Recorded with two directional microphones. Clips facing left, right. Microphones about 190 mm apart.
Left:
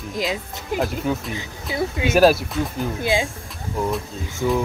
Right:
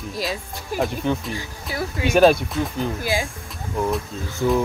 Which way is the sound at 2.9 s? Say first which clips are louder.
Left 6 dB; 20° left (ahead or behind).